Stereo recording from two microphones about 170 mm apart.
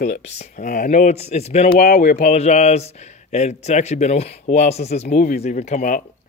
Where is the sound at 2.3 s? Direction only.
40° left (ahead or behind).